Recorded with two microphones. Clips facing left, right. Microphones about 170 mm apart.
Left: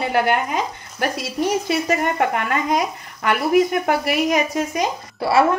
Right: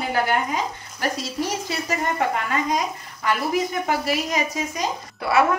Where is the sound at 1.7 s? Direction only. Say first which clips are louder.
Left 5 dB; 65° left (ahead or behind).